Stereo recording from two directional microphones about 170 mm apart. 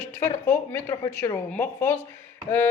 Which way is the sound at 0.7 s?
10° left (ahead or behind).